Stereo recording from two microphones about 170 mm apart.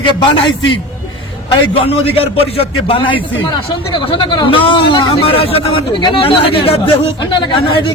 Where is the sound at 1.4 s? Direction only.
35° left (ahead or behind).